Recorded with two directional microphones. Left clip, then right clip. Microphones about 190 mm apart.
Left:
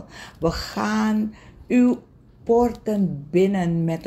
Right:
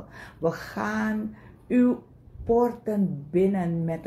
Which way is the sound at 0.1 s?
40° left (ahead or behind).